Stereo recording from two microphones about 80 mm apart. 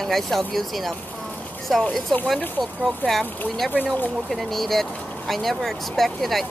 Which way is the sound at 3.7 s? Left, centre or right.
Left.